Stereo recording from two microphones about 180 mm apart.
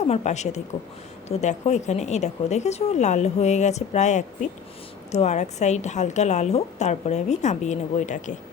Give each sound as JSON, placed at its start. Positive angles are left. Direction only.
{"t": 0.1, "sound": "a woman's voice", "side_deg": 40}